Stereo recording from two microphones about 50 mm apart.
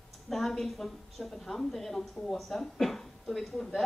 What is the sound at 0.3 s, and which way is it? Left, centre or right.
A woman's voice, centre.